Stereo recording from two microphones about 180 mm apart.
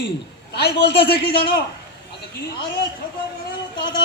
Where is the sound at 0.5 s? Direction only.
65° left (ahead or behind).